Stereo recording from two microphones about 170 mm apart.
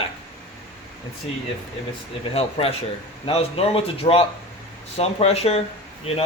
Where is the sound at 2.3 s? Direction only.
35° left (ahead or behind).